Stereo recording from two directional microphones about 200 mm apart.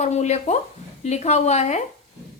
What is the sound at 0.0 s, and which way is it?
A woman's voice, 35° left (ahead or behind).